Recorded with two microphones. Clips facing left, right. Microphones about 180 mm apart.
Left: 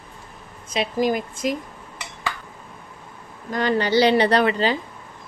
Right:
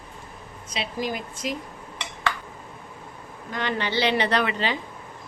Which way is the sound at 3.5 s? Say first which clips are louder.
Left 8 dB; 40° left (ahead or behind).